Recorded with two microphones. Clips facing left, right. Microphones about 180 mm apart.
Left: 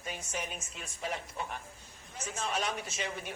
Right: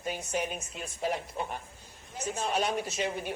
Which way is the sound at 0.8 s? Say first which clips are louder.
Right 6 dB; 40° right (ahead or behind).